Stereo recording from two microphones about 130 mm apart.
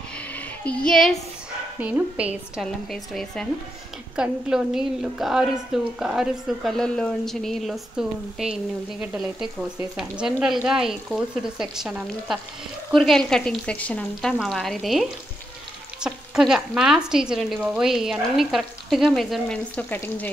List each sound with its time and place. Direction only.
0.3 s child singing: 10° left (ahead or behind)
1.8 s a woman's voice: 10° right (ahead or behind)
2.6 s speech: centre (ahead or behind)